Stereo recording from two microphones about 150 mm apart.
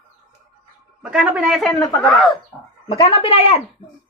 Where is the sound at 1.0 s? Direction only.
5° right (ahead or behind).